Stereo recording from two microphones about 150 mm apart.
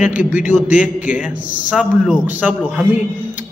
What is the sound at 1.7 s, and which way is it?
A man's voice, 5° right (ahead or behind).